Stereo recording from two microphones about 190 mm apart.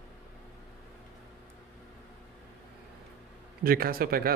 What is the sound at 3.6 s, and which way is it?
Speech, 50° right (ahead or behind).